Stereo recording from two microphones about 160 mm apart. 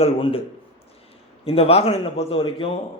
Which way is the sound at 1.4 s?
35° left (ahead or behind).